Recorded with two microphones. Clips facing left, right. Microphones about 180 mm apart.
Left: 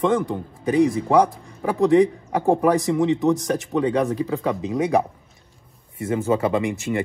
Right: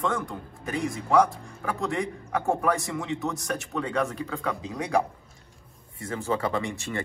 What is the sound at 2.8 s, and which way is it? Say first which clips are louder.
Speech: left 11 dB; 20° left (ahead or behind).